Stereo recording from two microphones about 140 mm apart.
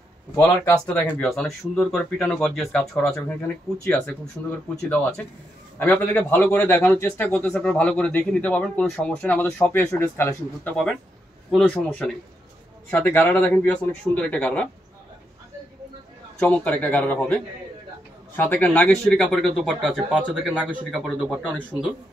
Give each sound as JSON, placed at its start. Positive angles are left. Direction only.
{"t": 0.4, "sound": "speech", "side_deg": 10}
{"t": 4.4, "sound": "a man's voice", "side_deg": 15}
{"t": 16.3, "sound": "a man's voice", "side_deg": 10}